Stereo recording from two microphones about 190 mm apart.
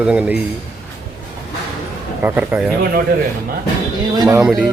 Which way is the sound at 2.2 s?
10° right (ahead or behind).